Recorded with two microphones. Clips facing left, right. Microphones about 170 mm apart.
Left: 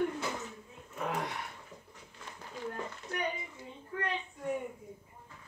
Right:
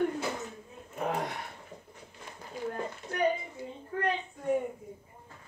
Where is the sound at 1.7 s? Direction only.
60° right (ahead or behind).